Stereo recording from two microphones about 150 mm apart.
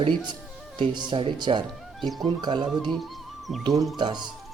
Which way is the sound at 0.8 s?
30° right (ahead or behind).